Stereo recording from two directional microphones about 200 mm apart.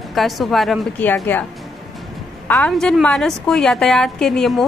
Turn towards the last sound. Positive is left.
turn(degrees=0)  # may be behind; listen again after turning